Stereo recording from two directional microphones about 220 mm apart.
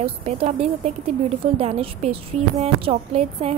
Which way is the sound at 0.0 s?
30° right (ahead or behind).